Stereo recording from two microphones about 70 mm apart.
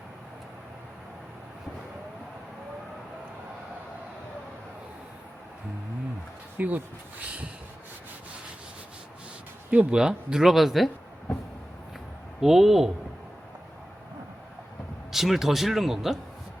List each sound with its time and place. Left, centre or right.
6.6 s speech: right
9.6 s speech: centre
12.4 s speech: centre
15.1 s speech: centre